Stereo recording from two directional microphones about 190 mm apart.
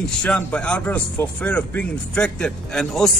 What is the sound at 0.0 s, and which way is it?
Speech, 5° left (ahead or behind).